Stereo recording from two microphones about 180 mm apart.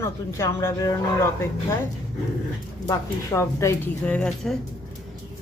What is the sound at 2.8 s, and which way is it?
Speech, 20° left (ahead or behind).